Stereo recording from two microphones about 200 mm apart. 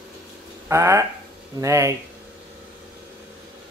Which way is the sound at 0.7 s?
15° right (ahead or behind).